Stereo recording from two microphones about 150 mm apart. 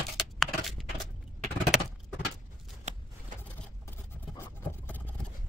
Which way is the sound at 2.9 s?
50° right (ahead or behind).